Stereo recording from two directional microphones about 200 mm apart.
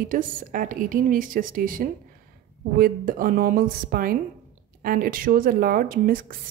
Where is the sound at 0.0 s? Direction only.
45° right (ahead or behind).